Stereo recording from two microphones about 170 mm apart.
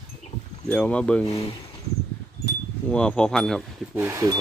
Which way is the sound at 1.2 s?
35° left (ahead or behind).